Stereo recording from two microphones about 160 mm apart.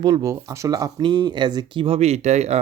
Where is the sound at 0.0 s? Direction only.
20° right (ahead or behind).